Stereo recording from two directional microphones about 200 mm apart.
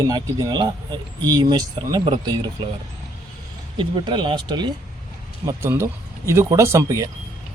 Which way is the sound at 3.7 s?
25° right (ahead or behind).